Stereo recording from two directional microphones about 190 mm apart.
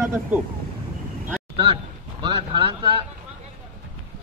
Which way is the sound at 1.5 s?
25° right (ahead or behind).